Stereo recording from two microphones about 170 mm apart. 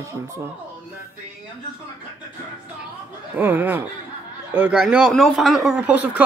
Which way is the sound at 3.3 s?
10° right (ahead or behind).